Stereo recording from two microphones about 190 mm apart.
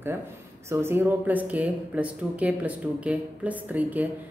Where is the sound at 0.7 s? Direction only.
10° right (ahead or behind).